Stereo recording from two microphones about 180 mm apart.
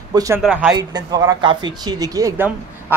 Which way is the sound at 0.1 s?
20° right (ahead or behind).